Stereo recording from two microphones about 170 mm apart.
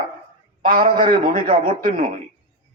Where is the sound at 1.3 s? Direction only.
55° right (ahead or behind).